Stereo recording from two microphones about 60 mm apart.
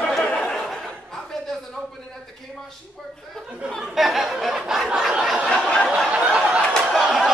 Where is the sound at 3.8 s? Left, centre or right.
Centre.